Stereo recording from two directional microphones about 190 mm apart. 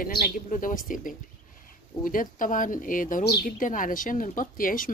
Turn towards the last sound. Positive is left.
turn(degrees=45)  # may be behind; listen again after turning